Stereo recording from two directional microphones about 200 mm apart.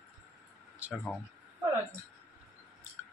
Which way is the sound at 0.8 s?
5° right (ahead or behind).